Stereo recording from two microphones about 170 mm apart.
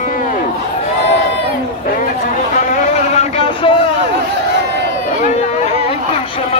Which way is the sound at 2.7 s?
40° left (ahead or behind).